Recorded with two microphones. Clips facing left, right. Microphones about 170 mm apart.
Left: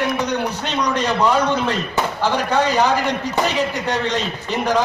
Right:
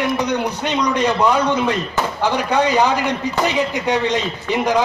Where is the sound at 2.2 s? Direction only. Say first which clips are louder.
Right 1 dB; 15° right (ahead or behind).